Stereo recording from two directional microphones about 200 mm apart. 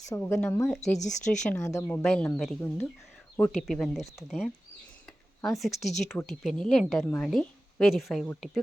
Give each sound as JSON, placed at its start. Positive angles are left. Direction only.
{"t": 0.2, "sound": "speech", "side_deg": 5}
{"t": 0.8, "sound": "speech", "side_deg": 35}
{"t": 1.5, "sound": "a woman's voice", "side_deg": 10}